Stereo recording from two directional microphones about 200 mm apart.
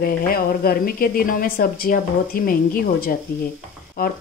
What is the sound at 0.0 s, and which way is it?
A woman's voice, 45° left (ahead or behind).